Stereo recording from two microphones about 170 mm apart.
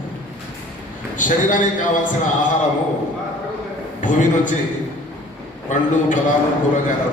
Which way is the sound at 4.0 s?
50° left (ahead or behind).